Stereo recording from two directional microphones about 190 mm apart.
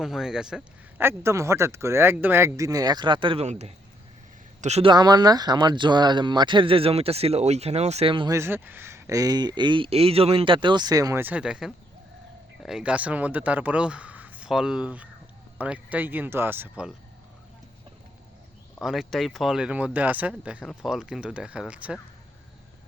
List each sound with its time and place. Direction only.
0.0 s speech: centre (ahead or behind); by 8.4 s 25° right (ahead or behind)
8.4 s speech: 10° right (ahead or behind)
18.8 s speech: centre (ahead or behind)